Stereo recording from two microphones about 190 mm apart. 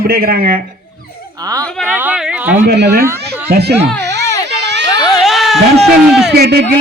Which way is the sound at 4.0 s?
65° right (ahead or behind).